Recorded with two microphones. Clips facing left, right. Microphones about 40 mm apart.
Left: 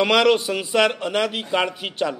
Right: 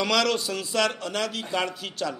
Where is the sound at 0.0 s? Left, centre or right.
Left.